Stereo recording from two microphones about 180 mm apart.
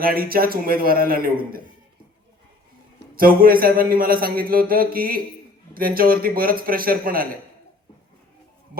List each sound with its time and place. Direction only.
0.0 s a man's voice: 55° right (ahead or behind)
3.2 s a man's voice: 55° right (ahead or behind)